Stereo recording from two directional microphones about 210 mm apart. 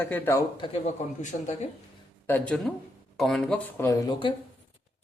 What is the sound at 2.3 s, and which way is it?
Speech, 5° left (ahead or behind).